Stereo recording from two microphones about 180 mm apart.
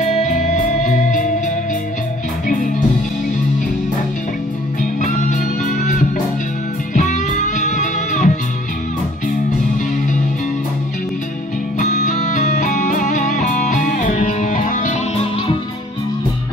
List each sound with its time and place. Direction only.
0.0 s music: 40° left (ahead or behind)
2.4 s music: 50° left (ahead or behind)
5.0 s music: 45° left (ahead or behind)
11.8 s music: 40° left (ahead or behind)